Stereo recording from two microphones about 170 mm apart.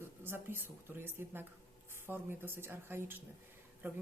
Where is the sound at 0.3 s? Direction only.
15° right (ahead or behind).